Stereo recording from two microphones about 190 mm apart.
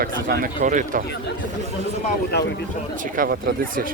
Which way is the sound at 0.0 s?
50° right (ahead or behind).